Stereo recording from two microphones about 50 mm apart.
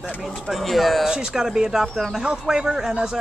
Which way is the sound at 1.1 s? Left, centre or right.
Centre.